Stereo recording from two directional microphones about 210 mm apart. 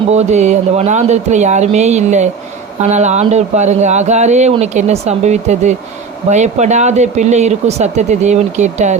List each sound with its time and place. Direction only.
0.1 s speech: 30° right (ahead or behind)